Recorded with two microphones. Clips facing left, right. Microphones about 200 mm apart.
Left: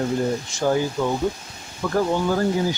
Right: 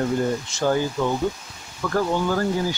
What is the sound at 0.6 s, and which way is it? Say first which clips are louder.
Speech: left 1 dB; 10° left (ahead or behind).